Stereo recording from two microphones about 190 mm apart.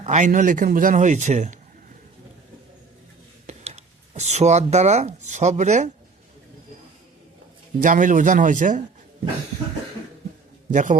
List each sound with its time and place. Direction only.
0.0 s a man's voice: 40° right (ahead or behind)
3.4 s speech: 35° right (ahead or behind)
7.8 s a man's voice: 45° right (ahead or behind)
10.7 s a man's voice: 40° right (ahead or behind)